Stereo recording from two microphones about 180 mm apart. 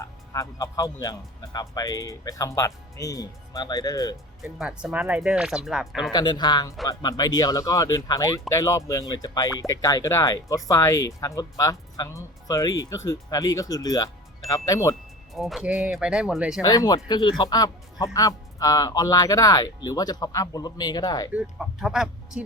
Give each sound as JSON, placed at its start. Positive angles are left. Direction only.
{"t": 0.0, "sound": "speech", "side_deg": 15}
{"t": 4.4, "sound": "speech", "side_deg": 0}
{"t": 6.1, "sound": "speech", "side_deg": 25}
{"t": 15.4, "sound": "speech", "side_deg": 0}
{"t": 16.6, "sound": "speech", "side_deg": 20}
{"t": 21.3, "sound": "speech", "side_deg": -5}